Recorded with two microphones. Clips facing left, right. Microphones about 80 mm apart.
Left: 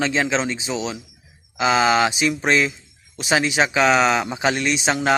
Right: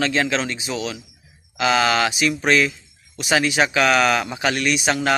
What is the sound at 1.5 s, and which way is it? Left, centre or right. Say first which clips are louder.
A man's voice: left 1 dB; centre.